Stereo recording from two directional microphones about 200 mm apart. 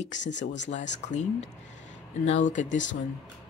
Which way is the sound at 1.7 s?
35° left (ahead or behind).